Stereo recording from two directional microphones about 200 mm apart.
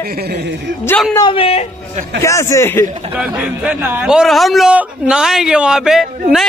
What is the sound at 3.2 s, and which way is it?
A man's voice, 5° right (ahead or behind).